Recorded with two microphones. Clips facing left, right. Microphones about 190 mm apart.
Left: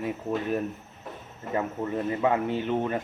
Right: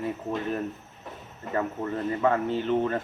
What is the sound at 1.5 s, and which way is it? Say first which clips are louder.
Speech: even; 15° left (ahead or behind).